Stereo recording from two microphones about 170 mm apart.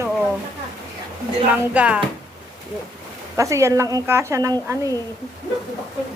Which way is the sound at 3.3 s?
20° right (ahead or behind).